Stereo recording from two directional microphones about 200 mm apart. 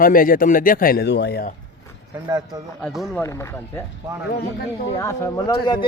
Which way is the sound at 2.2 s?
20° right (ahead or behind).